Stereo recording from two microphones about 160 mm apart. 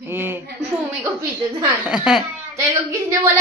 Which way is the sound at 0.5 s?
25° right (ahead or behind).